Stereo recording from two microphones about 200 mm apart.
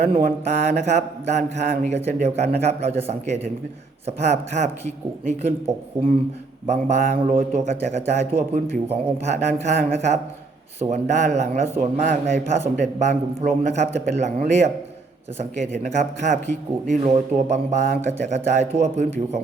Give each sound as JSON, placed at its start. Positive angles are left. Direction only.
{"t": 0.1, "sound": "a man's voice", "side_deg": -45}
{"t": 6.7, "sound": "a man's voice", "side_deg": -35}
{"t": 15.7, "sound": "a man's voice", "side_deg": -40}